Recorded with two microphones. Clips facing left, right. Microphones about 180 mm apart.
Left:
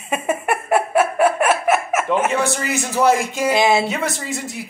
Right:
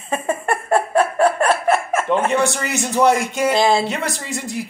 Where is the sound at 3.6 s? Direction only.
20° left (ahead or behind).